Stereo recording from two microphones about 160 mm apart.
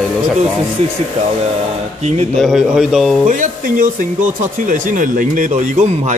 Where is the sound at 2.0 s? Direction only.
45° right (ahead or behind).